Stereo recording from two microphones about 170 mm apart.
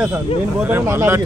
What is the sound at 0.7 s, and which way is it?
Speech, 15° right (ahead or behind).